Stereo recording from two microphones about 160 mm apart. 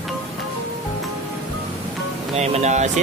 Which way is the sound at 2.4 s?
45° right (ahead or behind).